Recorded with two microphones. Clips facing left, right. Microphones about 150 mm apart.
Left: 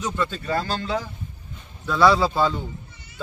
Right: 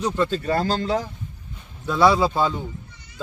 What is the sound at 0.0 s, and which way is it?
Speech, 35° right (ahead or behind).